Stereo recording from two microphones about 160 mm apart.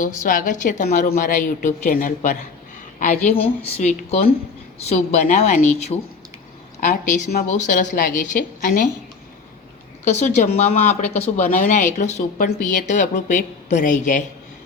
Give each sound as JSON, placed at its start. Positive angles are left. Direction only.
{"t": 0.0, "sound": "a woman's voice", "side_deg": 55}
{"t": 10.0, "sound": "a woman's voice", "side_deg": 45}